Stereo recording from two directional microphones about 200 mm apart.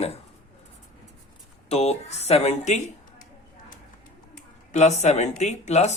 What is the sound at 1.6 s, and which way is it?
A man's voice, 30° left (ahead or behind).